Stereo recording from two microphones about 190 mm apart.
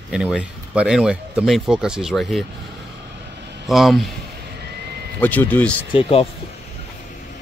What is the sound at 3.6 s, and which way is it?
Speech, centre (ahead or behind).